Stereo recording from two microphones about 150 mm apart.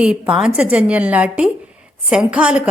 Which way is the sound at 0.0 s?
5° right (ahead or behind).